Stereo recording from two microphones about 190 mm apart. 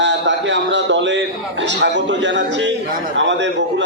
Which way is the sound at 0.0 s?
70° right (ahead or behind).